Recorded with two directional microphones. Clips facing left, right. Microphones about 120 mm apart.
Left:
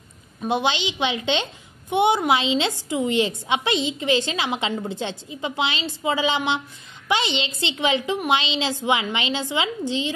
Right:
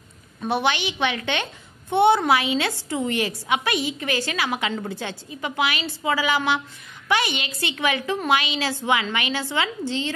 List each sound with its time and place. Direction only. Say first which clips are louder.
0.4 s a woman's voice: even; 15° left (ahead or behind)